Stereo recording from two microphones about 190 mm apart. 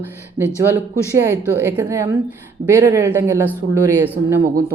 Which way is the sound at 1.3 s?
15° right (ahead or behind).